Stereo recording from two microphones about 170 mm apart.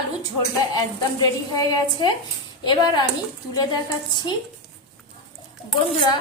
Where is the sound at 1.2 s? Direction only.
25° left (ahead or behind).